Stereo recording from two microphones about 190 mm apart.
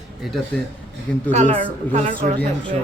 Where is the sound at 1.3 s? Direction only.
35° right (ahead or behind).